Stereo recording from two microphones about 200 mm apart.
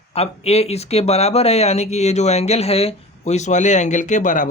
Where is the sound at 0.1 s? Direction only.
30° left (ahead or behind).